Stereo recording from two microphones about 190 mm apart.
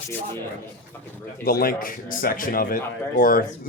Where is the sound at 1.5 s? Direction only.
50° left (ahead or behind).